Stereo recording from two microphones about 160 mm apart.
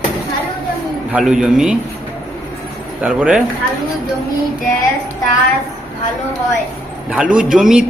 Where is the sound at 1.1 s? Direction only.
5° right (ahead or behind).